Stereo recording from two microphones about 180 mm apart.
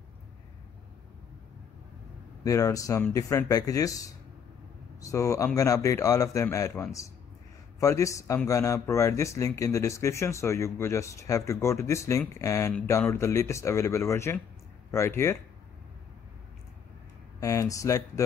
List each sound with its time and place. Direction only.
2.4 s speech: 20° left (ahead or behind)
17.4 s speech: 20° left (ahead or behind)